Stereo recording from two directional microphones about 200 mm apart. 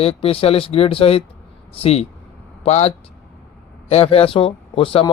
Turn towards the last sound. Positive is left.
turn(degrees=25)  # may be behind; listen again after turning